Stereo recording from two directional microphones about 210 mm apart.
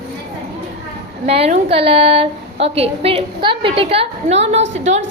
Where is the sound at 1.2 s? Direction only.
30° right (ahead or behind).